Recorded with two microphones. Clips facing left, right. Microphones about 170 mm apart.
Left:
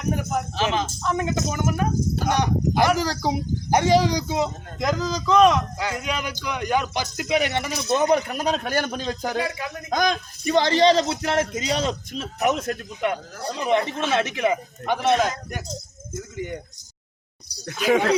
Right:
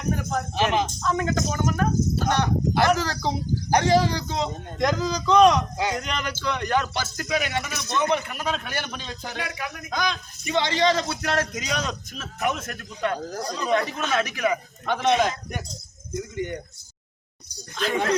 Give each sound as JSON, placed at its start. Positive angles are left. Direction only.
{"t": 0.2, "sound": "speech", "side_deg": 15}
{"t": 0.5, "sound": "speech", "side_deg": -10}
{"t": 1.0, "sound": "speech", "side_deg": 15}
{"t": 7.9, "sound": "a man's voice", "side_deg": 40}
{"t": 9.4, "sound": "speech", "side_deg": 25}
{"t": 9.9, "sound": "a man's voice", "side_deg": 45}
{"t": 13.0, "sound": "speech", "side_deg": 20}
{"t": 14.8, "sound": "speech", "side_deg": 0}
{"t": 17.5, "sound": "speech", "side_deg": 35}